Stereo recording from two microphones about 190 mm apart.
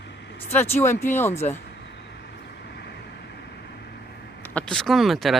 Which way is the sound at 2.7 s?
60° left (ahead or behind).